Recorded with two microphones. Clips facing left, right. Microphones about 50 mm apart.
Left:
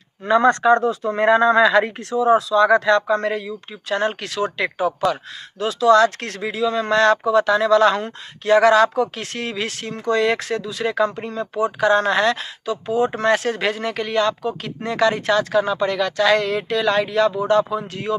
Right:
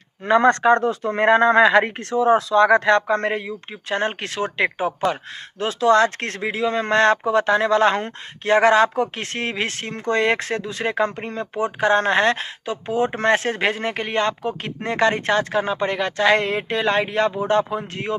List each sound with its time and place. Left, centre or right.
0.2 s speech: right